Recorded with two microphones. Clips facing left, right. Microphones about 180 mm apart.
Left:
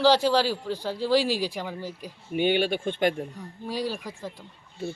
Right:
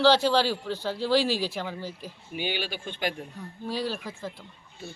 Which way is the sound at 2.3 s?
55° left (ahead or behind).